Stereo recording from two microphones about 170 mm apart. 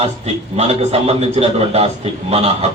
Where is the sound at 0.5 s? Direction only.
40° right (ahead or behind).